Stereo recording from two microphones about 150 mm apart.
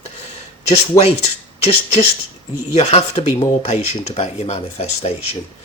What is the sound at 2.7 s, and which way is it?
Speech, 45° left (ahead or behind).